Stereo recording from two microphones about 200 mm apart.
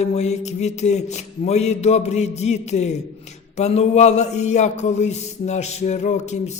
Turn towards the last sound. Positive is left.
turn(degrees=35)  # may be behind; listen again after turning